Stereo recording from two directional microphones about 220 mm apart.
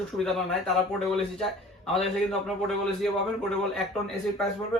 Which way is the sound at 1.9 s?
Centre (ahead or behind).